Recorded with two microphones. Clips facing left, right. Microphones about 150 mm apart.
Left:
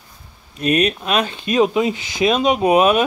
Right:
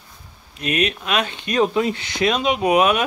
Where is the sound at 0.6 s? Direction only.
35° left (ahead or behind).